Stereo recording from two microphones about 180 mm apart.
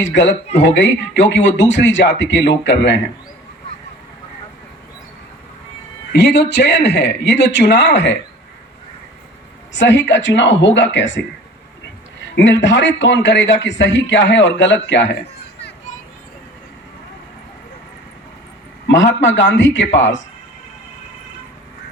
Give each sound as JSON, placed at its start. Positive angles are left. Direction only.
{"t": 0.0, "sound": "speech", "side_deg": 90}
{"t": 6.1, "sound": "a man's voice", "side_deg": 70}
{"t": 9.7, "sound": "a man's voice", "side_deg": 90}
{"t": 12.3, "sound": "a man's voice", "side_deg": 85}
{"t": 18.9, "sound": "a man's voice", "side_deg": 90}